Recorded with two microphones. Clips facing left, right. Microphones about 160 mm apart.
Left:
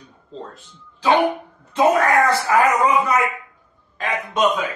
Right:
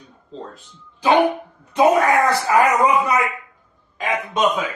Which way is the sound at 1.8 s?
15° right (ahead or behind).